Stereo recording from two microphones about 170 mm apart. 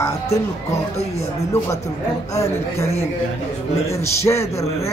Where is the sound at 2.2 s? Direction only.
15° left (ahead or behind).